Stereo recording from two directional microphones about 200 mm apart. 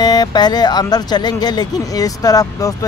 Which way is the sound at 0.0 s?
20° left (ahead or behind).